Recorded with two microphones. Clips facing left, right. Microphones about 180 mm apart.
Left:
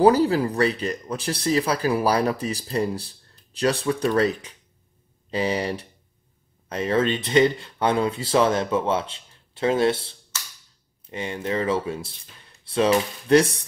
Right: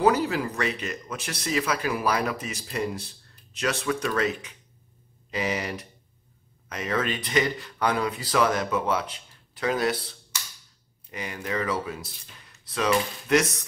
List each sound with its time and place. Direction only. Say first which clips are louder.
0.0 s speech: left 5 dB; 35° left (ahead or behind)